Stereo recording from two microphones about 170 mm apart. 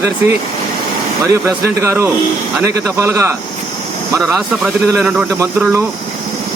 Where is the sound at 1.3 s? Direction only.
15° right (ahead or behind).